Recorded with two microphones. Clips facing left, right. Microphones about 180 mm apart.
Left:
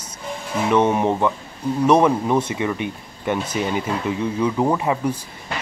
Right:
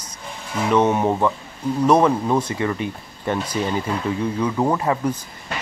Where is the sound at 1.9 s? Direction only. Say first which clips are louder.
Left 1 dB; 10° left (ahead or behind).